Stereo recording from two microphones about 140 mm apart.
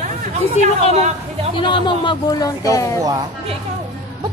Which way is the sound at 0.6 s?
50° left (ahead or behind).